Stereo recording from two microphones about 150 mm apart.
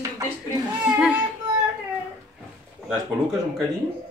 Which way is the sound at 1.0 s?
5° right (ahead or behind).